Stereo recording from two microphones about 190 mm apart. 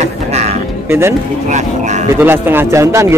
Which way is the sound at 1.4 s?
40° right (ahead or behind).